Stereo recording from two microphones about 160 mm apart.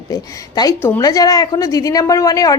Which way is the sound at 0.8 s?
15° left (ahead or behind).